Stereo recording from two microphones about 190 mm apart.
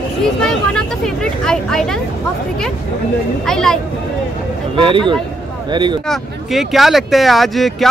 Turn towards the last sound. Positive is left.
turn(degrees=0)  # may be behind; listen again after turning